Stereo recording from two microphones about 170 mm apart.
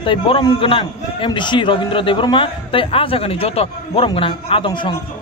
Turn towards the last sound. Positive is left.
turn(degrees=30)  # may be behind; listen again after turning